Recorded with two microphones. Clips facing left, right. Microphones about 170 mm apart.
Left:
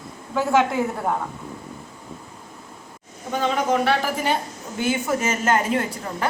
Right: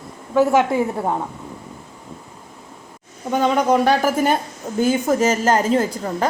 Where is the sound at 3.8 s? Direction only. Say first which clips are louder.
Right 5 dB; 45° right (ahead or behind).